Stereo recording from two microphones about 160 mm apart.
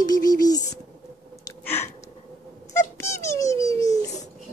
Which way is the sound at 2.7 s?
15° left (ahead or behind).